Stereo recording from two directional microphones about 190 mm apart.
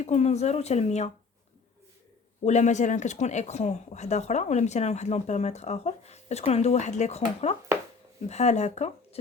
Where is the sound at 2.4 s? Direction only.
40° left (ahead or behind).